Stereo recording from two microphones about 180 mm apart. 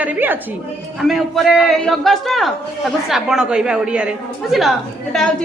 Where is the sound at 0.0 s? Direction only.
10° right (ahead or behind).